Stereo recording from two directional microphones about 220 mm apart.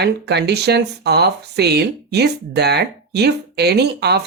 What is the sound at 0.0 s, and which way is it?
Speech, 50° right (ahead or behind).